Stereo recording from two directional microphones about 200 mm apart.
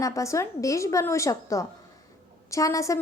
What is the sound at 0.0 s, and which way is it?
A woman's voice, 15° left (ahead or behind).